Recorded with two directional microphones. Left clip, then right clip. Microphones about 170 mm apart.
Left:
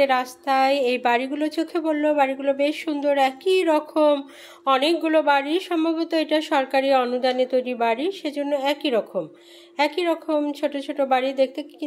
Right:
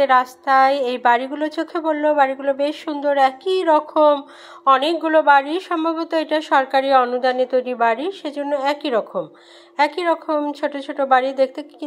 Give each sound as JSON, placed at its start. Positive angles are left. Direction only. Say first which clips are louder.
{"t": 0.0, "sound": "a woman's voice", "louder": "right 5 dB", "side_deg": 5}